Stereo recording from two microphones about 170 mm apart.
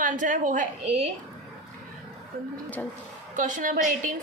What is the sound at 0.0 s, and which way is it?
A woman's voice, 50° right (ahead or behind).